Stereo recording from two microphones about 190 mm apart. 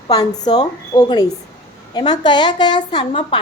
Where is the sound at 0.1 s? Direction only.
20° left (ahead or behind).